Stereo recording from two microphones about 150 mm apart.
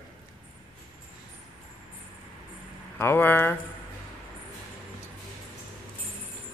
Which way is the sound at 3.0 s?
15° left (ahead or behind).